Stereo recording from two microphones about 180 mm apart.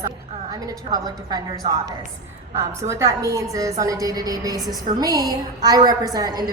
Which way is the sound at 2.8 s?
15° right (ahead or behind).